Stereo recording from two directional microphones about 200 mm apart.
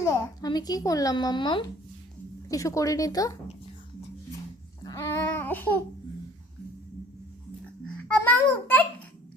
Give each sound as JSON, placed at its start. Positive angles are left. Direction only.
{"t": 0.0, "sound": "a woman's voice", "side_deg": 15}
{"t": 4.8, "sound": "babbling", "side_deg": 15}
{"t": 8.0, "sound": "a child's voice", "side_deg": 5}